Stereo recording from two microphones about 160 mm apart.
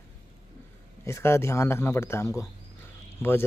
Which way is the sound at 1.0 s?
15° left (ahead or behind).